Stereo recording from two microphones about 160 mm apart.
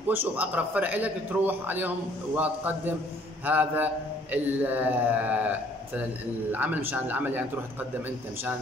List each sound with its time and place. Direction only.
0.1 s a man's voice: 10° right (ahead or behind)